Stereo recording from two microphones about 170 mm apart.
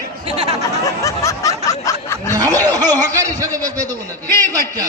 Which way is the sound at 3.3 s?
20° right (ahead or behind).